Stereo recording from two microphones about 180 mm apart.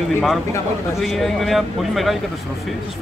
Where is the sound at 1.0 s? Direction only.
Centre (ahead or behind).